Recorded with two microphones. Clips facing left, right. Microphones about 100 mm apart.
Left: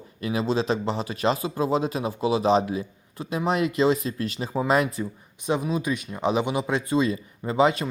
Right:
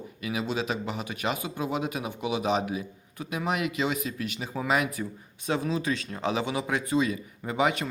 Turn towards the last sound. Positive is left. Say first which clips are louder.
# left 5 dB
turn(degrees=25)  # may be behind; listen again after turning